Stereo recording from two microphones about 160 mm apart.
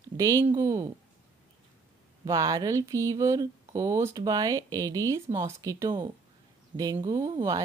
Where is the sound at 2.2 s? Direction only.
25° right (ahead or behind).